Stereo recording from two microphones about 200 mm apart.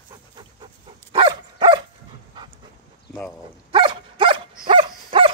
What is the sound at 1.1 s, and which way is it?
Dog, 20° right (ahead or behind).